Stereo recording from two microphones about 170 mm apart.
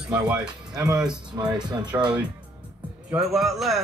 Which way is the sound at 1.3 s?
15° right (ahead or behind).